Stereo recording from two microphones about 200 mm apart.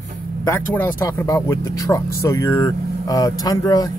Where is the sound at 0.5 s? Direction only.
10° left (ahead or behind).